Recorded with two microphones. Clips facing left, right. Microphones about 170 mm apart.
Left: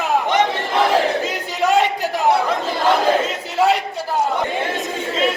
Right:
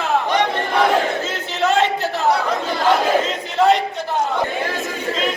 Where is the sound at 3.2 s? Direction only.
10° left (ahead or behind).